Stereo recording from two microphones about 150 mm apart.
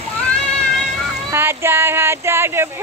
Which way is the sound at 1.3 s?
15° right (ahead or behind).